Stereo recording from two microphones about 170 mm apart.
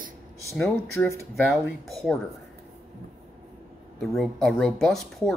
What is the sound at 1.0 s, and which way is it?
Speech, 15° left (ahead or behind).